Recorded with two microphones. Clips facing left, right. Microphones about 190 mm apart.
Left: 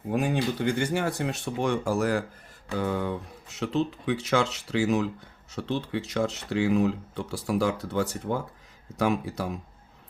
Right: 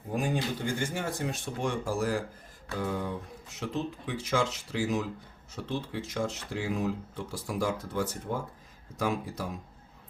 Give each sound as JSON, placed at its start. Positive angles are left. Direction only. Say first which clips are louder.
{"t": 0.1, "sound": "speech", "louder": "left 4 dB", "side_deg": 70}